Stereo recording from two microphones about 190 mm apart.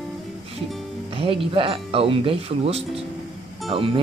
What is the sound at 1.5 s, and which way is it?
Speech, 30° right (ahead or behind).